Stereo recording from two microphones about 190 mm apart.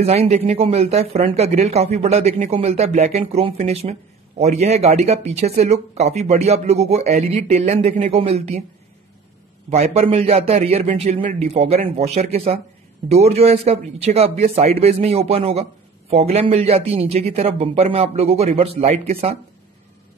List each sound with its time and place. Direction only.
0.0 s speech: 35° right (ahead or behind)
9.7 s speech: 35° right (ahead or behind)